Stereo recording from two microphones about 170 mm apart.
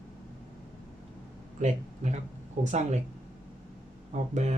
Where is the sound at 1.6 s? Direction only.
45° right (ahead or behind).